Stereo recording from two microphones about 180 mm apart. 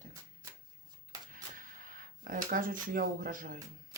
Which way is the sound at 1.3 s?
50° right (ahead or behind).